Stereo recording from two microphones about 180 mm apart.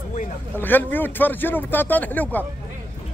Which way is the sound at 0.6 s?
10° left (ahead or behind).